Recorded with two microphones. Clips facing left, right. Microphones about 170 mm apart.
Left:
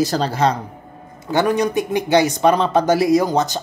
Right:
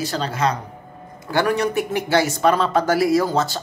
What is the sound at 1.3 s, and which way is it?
Speech, 20° left (ahead or behind).